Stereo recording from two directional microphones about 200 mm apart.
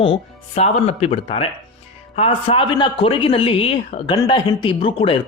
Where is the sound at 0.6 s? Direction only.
30° left (ahead or behind).